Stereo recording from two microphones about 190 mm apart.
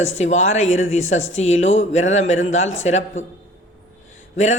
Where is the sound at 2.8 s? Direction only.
35° left (ahead or behind).